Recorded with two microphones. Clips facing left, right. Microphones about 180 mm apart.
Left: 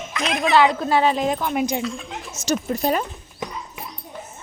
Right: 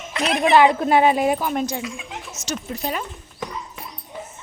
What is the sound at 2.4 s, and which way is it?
Speech, 45° left (ahead or behind).